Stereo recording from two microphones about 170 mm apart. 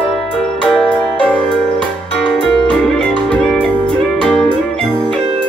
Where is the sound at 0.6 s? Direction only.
5° left (ahead or behind).